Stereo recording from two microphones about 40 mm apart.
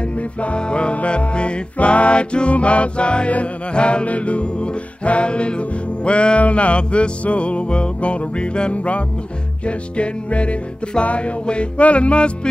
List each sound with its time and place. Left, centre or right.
0.4 s music: left